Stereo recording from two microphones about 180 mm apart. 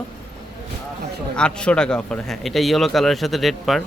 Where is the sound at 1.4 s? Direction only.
5° left (ahead or behind).